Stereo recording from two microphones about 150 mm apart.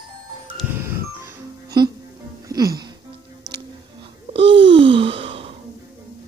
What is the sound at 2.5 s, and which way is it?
Music, 25° right (ahead or behind).